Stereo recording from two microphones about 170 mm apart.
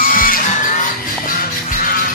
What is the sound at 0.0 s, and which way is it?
Music, 55° left (ahead or behind).